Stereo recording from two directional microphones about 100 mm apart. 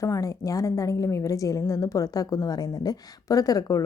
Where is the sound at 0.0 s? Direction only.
35° left (ahead or behind).